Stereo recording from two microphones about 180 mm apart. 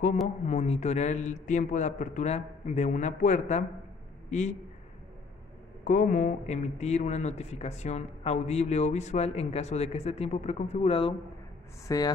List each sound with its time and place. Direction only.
0.5 s speech: 40° left (ahead or behind)
5.9 s speech: 45° left (ahead or behind)
11.9 s speech: 20° left (ahead or behind)